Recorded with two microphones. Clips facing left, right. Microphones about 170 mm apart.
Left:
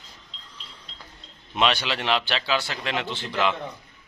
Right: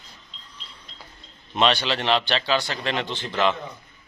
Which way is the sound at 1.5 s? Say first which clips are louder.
Right 2 dB; 10° left (ahead or behind).